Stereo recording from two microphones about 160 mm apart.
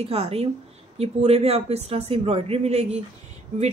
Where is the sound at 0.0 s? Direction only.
40° right (ahead or behind).